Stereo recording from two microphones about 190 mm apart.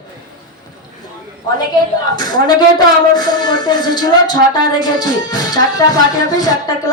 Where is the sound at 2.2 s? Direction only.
20° left (ahead or behind).